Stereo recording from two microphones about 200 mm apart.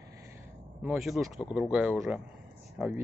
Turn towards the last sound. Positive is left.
turn(degrees=-5)  # may be behind; listen again after turning